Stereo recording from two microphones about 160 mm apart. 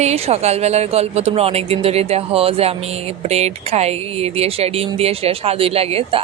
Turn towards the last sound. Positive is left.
turn(degrees=-40)  # may be behind; listen again after turning